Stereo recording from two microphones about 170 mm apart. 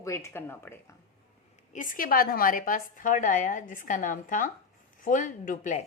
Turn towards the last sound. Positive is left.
turn(degrees=50)  # may be behind; listen again after turning